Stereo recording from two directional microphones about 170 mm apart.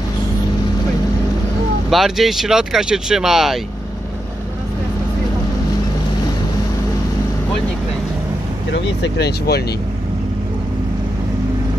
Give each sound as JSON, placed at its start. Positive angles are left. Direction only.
{"t": 1.9, "sound": "speech", "side_deg": 0}
{"t": 8.7, "sound": "speech", "side_deg": 80}